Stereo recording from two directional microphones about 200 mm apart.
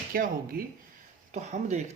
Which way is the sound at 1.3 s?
35° right (ahead or behind).